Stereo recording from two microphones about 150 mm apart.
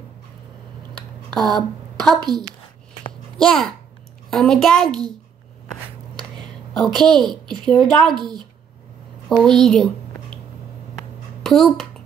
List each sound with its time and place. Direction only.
1.3 s speech: centre (ahead or behind)
3.3 s a child's voice: 5° left (ahead or behind)
6.7 s a woman's voice: 5° left (ahead or behind)
8.2 s a woman's voice: 30° right (ahead or behind)
9.3 s a woman's voice: 5° left (ahead or behind)
11.4 s a child's voice: centre (ahead or behind)